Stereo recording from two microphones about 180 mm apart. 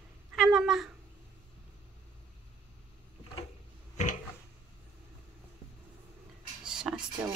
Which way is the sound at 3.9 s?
45° left (ahead or behind).